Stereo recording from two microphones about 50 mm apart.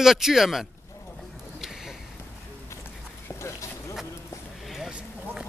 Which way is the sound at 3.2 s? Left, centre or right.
Left.